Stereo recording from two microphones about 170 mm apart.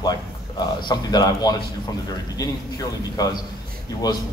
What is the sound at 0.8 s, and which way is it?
A man's voice, 25° left (ahead or behind).